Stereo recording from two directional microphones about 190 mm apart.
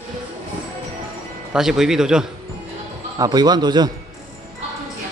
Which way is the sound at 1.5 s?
5° right (ahead or behind).